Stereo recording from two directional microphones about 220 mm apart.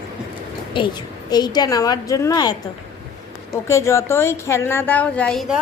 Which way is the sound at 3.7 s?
10° left (ahead or behind).